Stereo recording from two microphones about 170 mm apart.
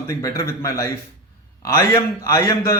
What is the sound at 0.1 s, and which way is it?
A man's voice, 20° left (ahead or behind).